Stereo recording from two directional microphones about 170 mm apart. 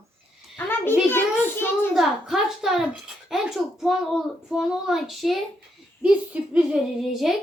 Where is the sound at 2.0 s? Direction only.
Centre (ahead or behind).